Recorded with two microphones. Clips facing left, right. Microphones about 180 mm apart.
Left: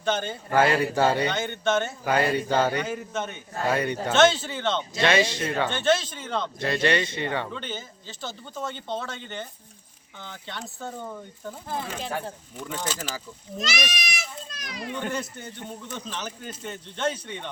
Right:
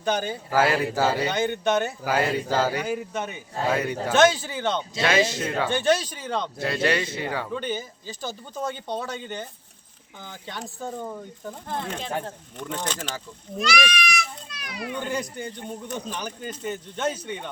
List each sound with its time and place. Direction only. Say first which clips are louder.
0.0 s a man's voice: right 1 dB; 10° right (ahead or behind)
11.7 s speech: right 1 dB; 5° left (ahead or behind)
13.6 s speech: right 6 dB; 40° left (ahead or behind)
14.8 s a man's voice: right 1 dB; 10° right (ahead or behind)